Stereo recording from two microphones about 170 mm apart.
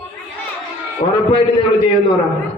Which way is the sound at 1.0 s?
35° left (ahead or behind).